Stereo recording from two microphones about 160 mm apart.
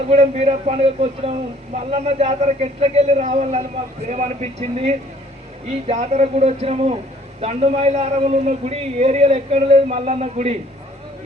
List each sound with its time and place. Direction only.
0.1 s a man's voice: 40° right (ahead or behind)